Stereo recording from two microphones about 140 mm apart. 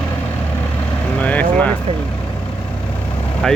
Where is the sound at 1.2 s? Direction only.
10° left (ahead or behind).